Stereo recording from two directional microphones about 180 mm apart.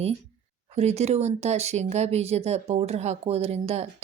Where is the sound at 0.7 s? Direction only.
35° right (ahead or behind).